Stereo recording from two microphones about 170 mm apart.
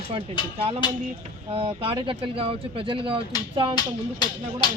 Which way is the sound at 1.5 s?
35° right (ahead or behind).